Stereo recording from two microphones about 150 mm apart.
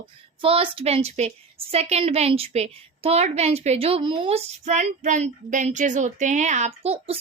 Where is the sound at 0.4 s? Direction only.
35° right (ahead or behind).